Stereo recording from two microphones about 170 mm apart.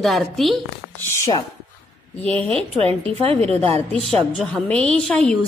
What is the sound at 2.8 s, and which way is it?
A woman's voice, 35° right (ahead or behind).